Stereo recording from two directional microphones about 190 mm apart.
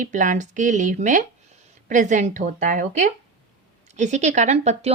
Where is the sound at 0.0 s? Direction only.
40° right (ahead or behind).